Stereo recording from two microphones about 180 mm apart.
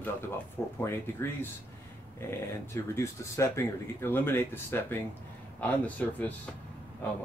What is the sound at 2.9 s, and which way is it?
Speech, 15° left (ahead or behind).